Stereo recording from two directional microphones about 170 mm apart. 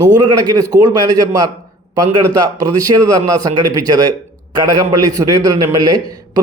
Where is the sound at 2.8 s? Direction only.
20° right (ahead or behind).